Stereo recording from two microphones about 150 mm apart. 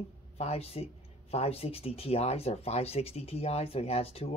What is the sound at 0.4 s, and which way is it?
Speech, 45° left (ahead or behind).